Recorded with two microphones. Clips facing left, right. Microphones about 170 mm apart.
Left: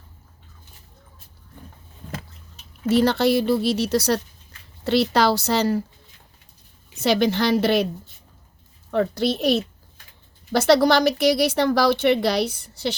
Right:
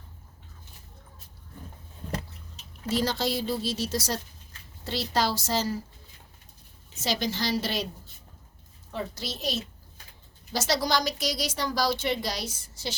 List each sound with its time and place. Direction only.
2.9 s a woman's voice: 65° left (ahead or behind)
6.9 s speech: 60° left (ahead or behind)
8.9 s speech: 65° left (ahead or behind)